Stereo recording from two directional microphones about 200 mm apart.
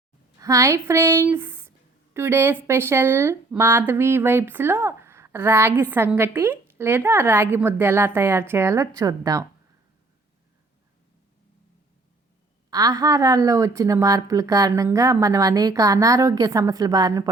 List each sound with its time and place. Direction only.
0.3 s speech: 15° right (ahead or behind)
12.7 s speech: 20° right (ahead or behind)